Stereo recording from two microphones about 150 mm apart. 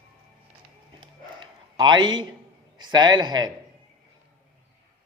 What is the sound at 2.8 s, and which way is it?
Speech, 30° right (ahead or behind).